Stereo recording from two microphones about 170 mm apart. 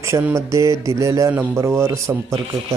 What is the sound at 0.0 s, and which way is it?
Speech, 15° right (ahead or behind).